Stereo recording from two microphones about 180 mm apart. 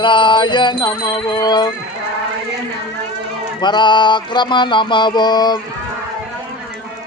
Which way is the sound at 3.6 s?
25° left (ahead or behind).